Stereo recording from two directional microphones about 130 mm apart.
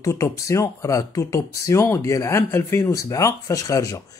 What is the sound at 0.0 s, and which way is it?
Speech, 25° left (ahead or behind).